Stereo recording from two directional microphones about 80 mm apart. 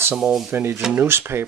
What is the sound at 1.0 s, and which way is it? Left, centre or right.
Speech, right.